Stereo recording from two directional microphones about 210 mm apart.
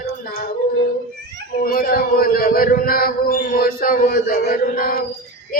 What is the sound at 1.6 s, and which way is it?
A man's voice, 45° left (ahead or behind).